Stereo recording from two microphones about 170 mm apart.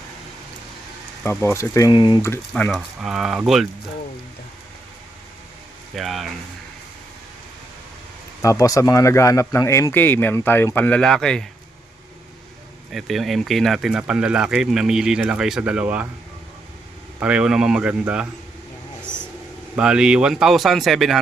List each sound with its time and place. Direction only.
1.2 s speech: 15° left (ahead or behind)
2.5 s speech: 5° left (ahead or behind)
6.0 s speech: centre (ahead or behind)
8.4 s speech: 20° left (ahead or behind); by 11.4 s 5° left (ahead or behind)
12.9 s speech: centre (ahead or behind)
17.2 s speech: 5° right (ahead or behind)
19.7 s speech: 5° right (ahead or behind)